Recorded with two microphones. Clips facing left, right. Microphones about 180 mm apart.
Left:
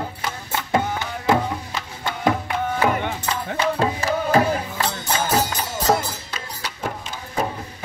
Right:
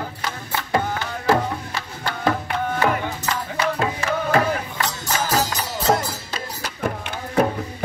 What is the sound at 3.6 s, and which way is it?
Music, 35° left (ahead or behind).